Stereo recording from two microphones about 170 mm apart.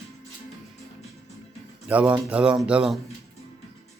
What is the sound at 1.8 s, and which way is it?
Speech, 10° right (ahead or behind).